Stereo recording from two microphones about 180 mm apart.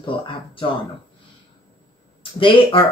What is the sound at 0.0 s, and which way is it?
Speech, 30° left (ahead or behind).